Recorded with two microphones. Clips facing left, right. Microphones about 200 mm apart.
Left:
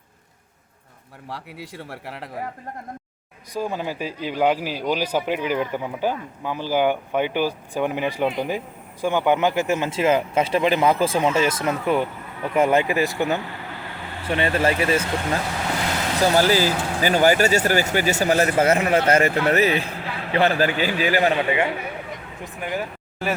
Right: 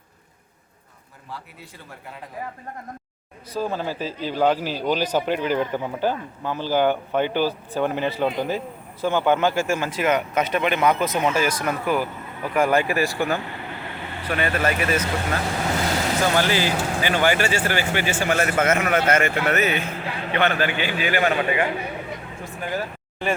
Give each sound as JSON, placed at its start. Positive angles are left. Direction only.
{"t": 1.3, "sound": "speech", "side_deg": 90}
{"t": 3.5, "sound": "speech", "side_deg": 15}